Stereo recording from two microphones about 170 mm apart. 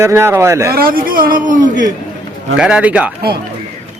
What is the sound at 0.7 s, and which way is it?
A man's voice, 60° right (ahead or behind).